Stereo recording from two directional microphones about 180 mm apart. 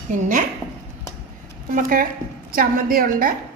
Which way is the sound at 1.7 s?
50° right (ahead or behind).